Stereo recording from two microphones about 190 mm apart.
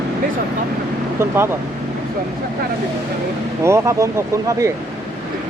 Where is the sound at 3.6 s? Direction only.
15° right (ahead or behind).